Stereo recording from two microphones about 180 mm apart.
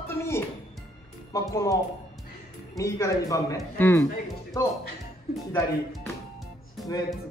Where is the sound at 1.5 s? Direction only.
20° left (ahead or behind).